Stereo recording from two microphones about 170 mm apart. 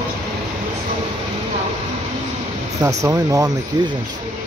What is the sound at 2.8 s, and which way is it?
Speech, 20° right (ahead or behind).